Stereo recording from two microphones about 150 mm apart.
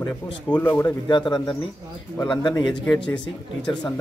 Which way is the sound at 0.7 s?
25° left (ahead or behind).